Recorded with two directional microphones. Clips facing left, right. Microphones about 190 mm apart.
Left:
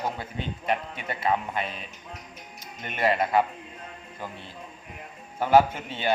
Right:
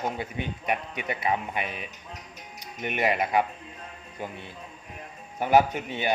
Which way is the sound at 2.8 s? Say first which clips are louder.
Left 1 dB; 15° right (ahead or behind).